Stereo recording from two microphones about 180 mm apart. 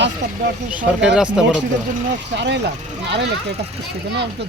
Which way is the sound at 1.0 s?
5° right (ahead or behind).